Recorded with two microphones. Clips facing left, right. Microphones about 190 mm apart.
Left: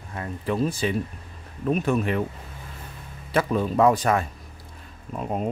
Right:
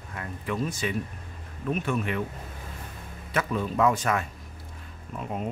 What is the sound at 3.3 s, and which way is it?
Speech, 35° left (ahead or behind).